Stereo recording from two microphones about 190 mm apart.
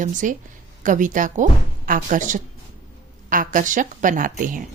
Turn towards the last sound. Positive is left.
turn(degrees=-45)  # may be behind; listen again after turning